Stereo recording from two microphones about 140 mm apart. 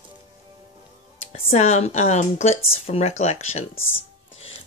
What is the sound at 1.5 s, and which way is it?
Speech, 50° left (ahead or behind).